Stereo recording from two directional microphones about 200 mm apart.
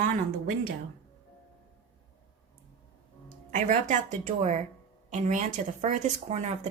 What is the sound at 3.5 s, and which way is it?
A woman's voice, 40° right (ahead or behind).